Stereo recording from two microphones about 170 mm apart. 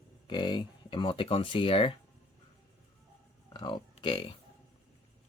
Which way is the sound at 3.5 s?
25° left (ahead or behind).